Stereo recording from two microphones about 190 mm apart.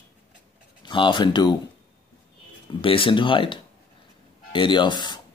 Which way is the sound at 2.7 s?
25° left (ahead or behind).